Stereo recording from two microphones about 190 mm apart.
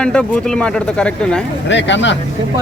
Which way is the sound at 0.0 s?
5° left (ahead or behind).